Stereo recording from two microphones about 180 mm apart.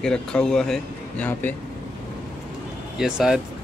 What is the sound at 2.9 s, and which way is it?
Speech, 5° right (ahead or behind).